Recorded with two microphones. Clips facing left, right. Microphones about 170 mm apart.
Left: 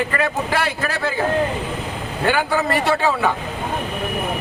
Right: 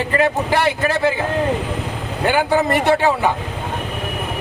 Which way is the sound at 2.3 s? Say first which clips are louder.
Right 3 dB; 20° right (ahead or behind).